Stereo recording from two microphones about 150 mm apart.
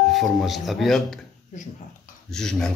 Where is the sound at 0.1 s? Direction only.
Centre (ahead or behind).